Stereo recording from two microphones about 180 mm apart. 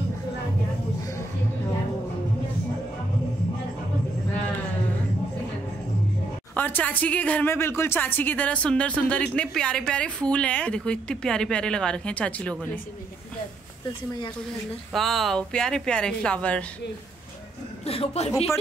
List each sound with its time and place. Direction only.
6.5 s speech: 10° left (ahead or behind)
14.9 s speech: centre (ahead or behind)
17.8 s speech: 35° left (ahead or behind)